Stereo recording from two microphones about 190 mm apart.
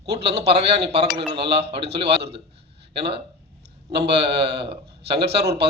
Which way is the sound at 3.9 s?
60° right (ahead or behind).